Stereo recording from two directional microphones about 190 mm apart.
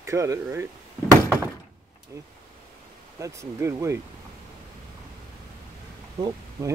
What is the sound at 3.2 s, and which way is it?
Speech, 15° right (ahead or behind).